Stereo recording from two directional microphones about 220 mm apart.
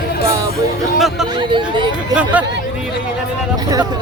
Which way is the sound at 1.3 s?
20° right (ahead or behind).